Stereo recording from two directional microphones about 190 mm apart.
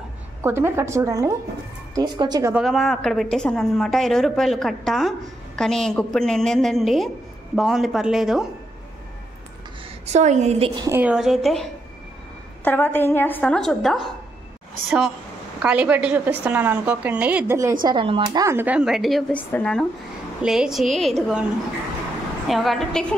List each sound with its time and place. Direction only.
0.4 s a woman's voice: 10° right (ahead or behind)
2.5 s a woman's voice: centre (ahead or behind)
10.0 s a woman's voice: 35° right (ahead or behind)
10.8 s a woman's voice: 10° right (ahead or behind)
12.6 s a woman's voice: 10° left (ahead or behind)
15.6 s a woman's voice: 5° right (ahead or behind)
17.8 s a woman's voice: 25° right (ahead or behind); by 21.5 s centre (ahead or behind)
22.5 s a woman's voice: centre (ahead or behind)